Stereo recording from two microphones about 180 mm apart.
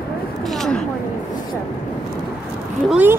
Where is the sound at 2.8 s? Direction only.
5° right (ahead or behind).